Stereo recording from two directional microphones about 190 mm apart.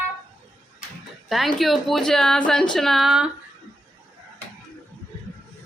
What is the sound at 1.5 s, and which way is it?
Speech, centre (ahead or behind).